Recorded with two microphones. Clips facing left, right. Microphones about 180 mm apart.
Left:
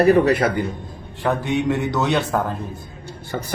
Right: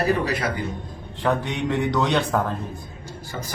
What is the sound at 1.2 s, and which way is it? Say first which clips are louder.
A man's voice: left 3 dB; 5° left (ahead or behind).